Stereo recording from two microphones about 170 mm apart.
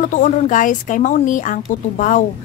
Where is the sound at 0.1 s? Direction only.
50° left (ahead or behind).